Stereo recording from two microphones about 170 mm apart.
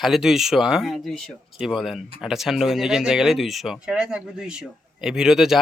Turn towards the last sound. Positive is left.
turn(degrees=0)  # may be behind; listen again after turning